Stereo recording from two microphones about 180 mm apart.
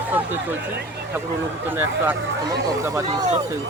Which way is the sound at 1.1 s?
10° right (ahead or behind).